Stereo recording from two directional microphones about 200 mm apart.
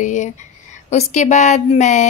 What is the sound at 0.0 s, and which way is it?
Speech, 35° left (ahead or behind).